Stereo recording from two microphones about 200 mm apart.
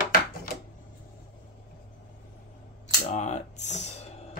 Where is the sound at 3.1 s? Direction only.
35° left (ahead or behind).